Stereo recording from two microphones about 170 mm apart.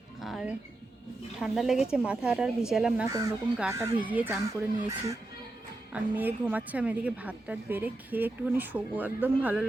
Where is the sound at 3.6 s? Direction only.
15° right (ahead or behind).